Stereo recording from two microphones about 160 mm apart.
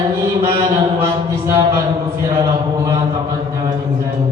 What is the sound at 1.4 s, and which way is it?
Chant, 20° right (ahead or behind).